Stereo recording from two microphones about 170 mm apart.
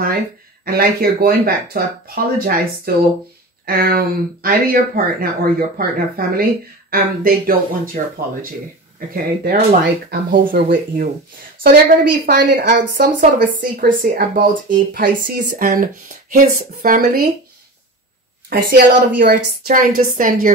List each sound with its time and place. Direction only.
0.7 s speech: 65° right (ahead or behind)
18.7 s speech: 60° right (ahead or behind)